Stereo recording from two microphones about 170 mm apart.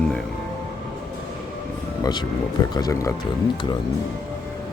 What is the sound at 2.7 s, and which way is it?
Speech, 20° left (ahead or behind).